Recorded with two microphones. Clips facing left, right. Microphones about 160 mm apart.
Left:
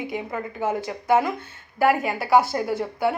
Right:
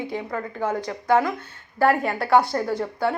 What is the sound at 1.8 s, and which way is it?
A woman's voice, 10° left (ahead or behind).